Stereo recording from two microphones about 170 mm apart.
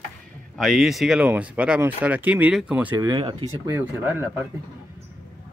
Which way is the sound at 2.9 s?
25° right (ahead or behind).